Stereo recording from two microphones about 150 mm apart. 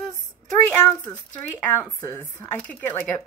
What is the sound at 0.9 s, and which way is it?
Speech, 10° left (ahead or behind).